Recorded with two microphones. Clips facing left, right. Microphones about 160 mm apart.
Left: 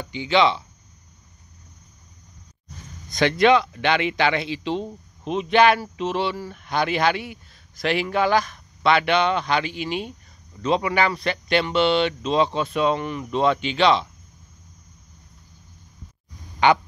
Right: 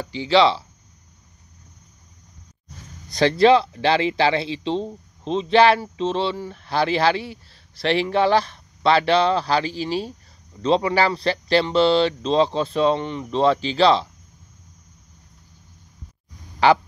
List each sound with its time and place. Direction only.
0.0 s speech: 35° right (ahead or behind)
3.1 s speech: 35° right (ahead or behind)
16.5 s a sound: 35° right (ahead or behind)